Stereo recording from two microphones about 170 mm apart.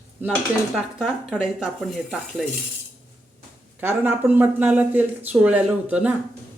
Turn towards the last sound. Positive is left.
turn(degrees=-10)  # may be behind; listen again after turning